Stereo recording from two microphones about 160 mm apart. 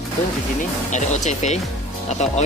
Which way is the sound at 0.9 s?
50° left (ahead or behind).